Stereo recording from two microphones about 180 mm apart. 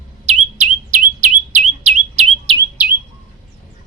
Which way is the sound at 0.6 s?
45° right (ahead or behind).